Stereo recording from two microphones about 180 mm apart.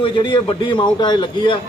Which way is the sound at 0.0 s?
30° left (ahead or behind).